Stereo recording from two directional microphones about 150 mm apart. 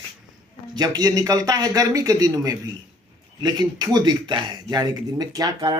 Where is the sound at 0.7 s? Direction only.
25° right (ahead or behind).